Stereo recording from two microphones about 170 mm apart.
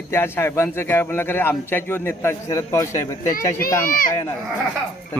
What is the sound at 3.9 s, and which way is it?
Speech, 55° left (ahead or behind).